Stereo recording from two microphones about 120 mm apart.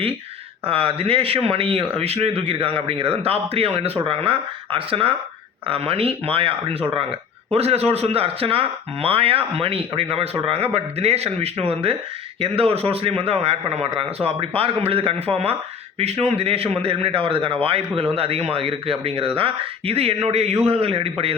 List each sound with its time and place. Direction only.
0.7 s a man's voice: 50° right (ahead or behind)